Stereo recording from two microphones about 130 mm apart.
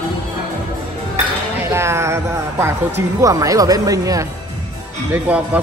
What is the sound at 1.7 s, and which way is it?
Speech, 20° right (ahead or behind).